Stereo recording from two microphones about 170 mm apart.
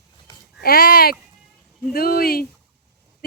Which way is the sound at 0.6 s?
60° left (ahead or behind).